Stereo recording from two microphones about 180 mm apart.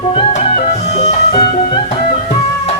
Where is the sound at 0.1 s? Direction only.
35° left (ahead or behind).